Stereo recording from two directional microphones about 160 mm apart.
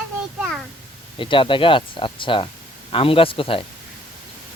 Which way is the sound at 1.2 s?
30° left (ahead or behind).